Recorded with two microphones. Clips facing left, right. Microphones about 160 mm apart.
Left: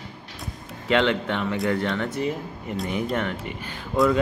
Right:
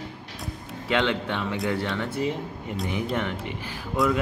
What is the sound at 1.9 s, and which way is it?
Speech, 10° right (ahead or behind).